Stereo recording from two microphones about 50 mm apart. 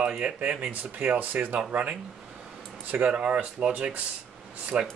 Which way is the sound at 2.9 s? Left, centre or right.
Right.